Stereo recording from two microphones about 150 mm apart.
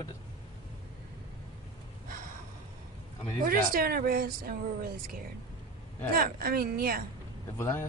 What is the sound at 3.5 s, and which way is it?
A woman's voice, 80° right.